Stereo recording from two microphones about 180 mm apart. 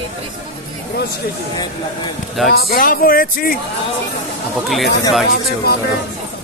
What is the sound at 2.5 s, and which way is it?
A man's voice, 60° left (ahead or behind).